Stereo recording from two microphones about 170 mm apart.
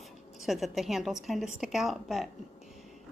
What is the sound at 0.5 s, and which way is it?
Speech, centre (ahead or behind).